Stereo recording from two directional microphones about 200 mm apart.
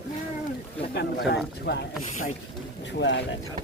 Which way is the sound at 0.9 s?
55° left (ahead or behind).